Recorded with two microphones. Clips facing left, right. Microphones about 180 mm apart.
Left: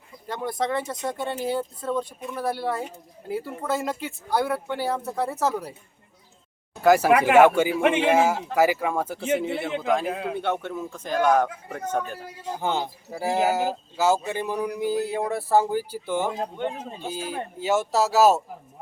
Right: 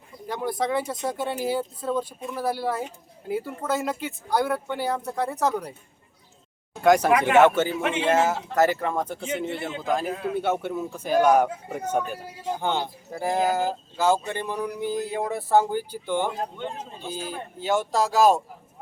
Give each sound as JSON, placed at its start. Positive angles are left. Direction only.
{"t": 0.3, "sound": "speech", "side_deg": 0}
{"t": 6.8, "sound": "speech", "side_deg": 5}
{"t": 7.8, "sound": "speech", "side_deg": 55}
{"t": 8.0, "sound": "speech", "side_deg": 10}
{"t": 10.1, "sound": "speech", "side_deg": 60}
{"t": 10.3, "sound": "a man's voice", "side_deg": -5}
{"t": 12.5, "sound": "speech", "side_deg": 5}
{"t": 16.6, "sound": "speech", "side_deg": 55}
{"t": 17.2, "sound": "speech", "side_deg": 10}